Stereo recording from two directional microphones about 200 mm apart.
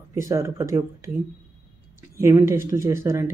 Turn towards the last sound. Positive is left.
turn(degrees=-15)  # may be behind; listen again after turning